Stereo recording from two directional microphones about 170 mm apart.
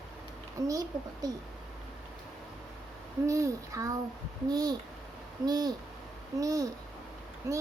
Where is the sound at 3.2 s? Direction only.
20° right (ahead or behind).